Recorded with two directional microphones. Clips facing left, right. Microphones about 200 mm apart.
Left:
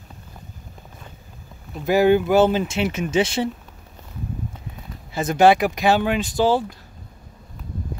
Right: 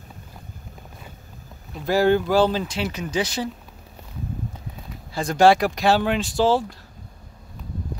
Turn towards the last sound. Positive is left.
turn(degrees=0)  # may be behind; listen again after turning